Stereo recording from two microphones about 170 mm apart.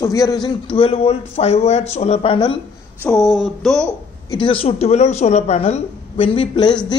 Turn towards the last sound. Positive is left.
turn(degrees=30)  # may be behind; listen again after turning